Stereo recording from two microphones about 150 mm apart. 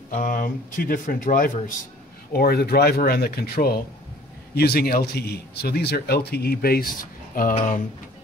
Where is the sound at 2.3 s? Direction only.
90° left; by 7.5 s 75° left (ahead or behind).